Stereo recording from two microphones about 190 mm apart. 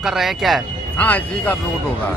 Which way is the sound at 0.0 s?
Centre (ahead or behind).